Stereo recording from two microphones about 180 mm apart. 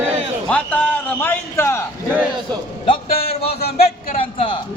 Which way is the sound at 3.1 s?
60° left (ahead or behind).